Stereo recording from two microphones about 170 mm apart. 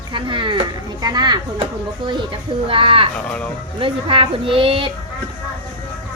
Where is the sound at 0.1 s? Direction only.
30° right (ahead or behind).